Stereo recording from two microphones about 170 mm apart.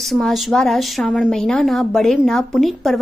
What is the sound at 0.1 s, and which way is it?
A woman's voice, centre (ahead or behind).